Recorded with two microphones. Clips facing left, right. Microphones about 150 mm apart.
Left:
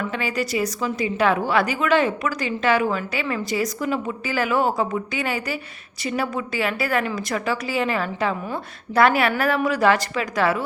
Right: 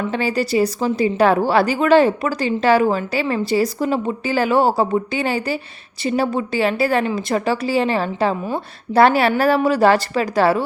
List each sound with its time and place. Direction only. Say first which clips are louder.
0.1 s a woman's voice: right 5 dB; 30° right (ahead or behind)